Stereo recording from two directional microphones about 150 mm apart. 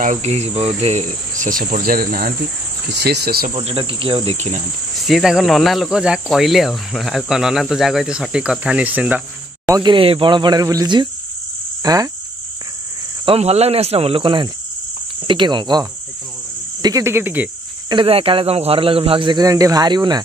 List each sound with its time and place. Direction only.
0.0 s cricket: 50° right (ahead or behind); by 2.3 s 75° right (ahead or behind)
2.9 s speech: 90° right
3.5 s speech: 35° right (ahead or behind)
4.9 s cricket: centre (ahead or behind)
9.7 s speech: 25° right (ahead or behind)
9.9 s speech: 35° right (ahead or behind)
13.2 s speech: 40° right (ahead or behind); by 17.5 s 10° right (ahead or behind)
17.8 s speech: 35° right (ahead or behind)